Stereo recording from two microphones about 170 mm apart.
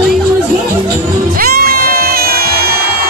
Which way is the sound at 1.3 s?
60° right (ahead or behind).